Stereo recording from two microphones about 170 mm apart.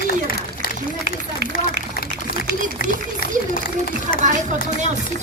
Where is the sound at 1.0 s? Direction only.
80° right.